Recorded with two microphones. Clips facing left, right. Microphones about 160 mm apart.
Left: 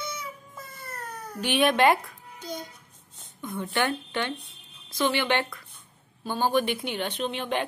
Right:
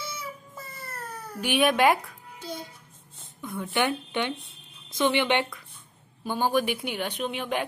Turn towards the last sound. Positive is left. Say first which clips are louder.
# left 1 dB
turn(degrees=-10)  # may be behind; listen again after turning